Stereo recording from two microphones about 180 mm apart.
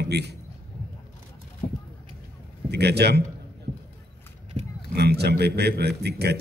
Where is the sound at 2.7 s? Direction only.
65° right (ahead or behind).